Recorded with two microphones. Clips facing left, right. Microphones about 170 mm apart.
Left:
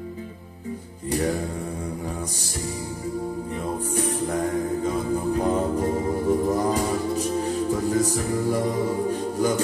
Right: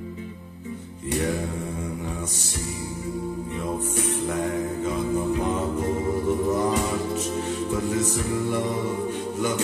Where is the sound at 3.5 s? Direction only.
35° left (ahead or behind).